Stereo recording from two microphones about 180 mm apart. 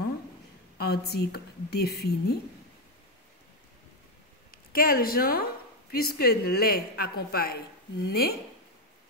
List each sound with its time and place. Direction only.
0.7 s a woman's voice: 65° left (ahead or behind)
4.5 s a woman's voice: 55° left (ahead or behind)